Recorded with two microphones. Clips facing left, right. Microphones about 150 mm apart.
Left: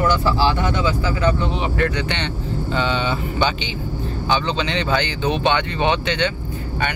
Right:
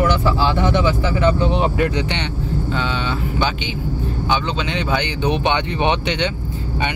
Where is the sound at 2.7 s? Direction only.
Centre (ahead or behind); by 6.2 s 20° right (ahead or behind).